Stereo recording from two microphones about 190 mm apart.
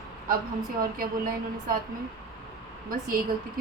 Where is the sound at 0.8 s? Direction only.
50° right (ahead or behind).